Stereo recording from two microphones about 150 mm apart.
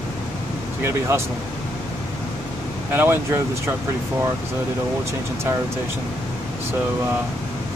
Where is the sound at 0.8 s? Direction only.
15° right (ahead or behind).